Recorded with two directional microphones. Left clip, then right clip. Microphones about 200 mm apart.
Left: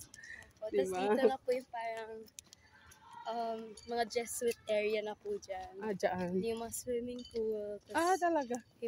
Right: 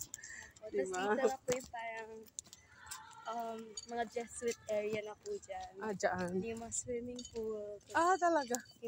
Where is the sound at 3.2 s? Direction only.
25° left (ahead or behind).